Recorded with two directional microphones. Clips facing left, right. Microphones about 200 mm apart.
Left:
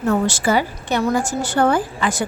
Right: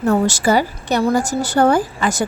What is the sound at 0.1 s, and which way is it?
A woman's voice, 40° right (ahead or behind).